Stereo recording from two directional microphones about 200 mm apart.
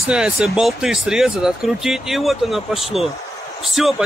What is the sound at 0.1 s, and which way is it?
Speech, 5° right (ahead or behind).